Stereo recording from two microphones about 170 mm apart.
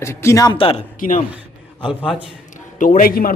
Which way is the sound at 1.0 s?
50° left (ahead or behind).